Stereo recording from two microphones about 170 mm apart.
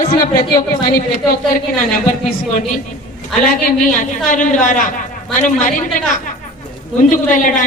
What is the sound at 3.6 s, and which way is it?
A woman's voice, 55° left (ahead or behind).